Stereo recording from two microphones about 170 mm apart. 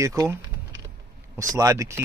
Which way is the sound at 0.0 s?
20° right (ahead or behind).